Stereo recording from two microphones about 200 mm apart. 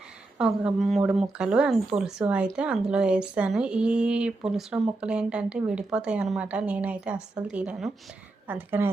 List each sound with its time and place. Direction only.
0.3 s a woman's voice: 5° right (ahead or behind)